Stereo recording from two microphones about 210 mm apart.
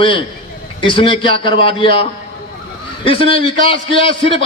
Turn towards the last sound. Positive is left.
turn(degrees=25)  # may be behind; listen again after turning